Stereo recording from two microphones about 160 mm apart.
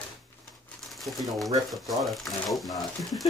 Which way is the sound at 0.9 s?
Centre (ahead or behind).